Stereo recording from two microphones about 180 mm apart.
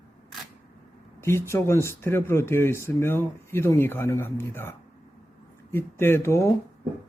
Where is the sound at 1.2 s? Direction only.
15° left (ahead or behind).